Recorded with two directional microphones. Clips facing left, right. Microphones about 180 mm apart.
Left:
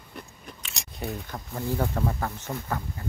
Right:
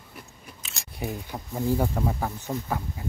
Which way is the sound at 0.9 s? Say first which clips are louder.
Right 1 dB; 10° right (ahead or behind).